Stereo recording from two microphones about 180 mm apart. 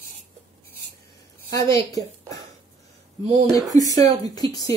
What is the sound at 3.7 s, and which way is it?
Speech, 20° left (ahead or behind).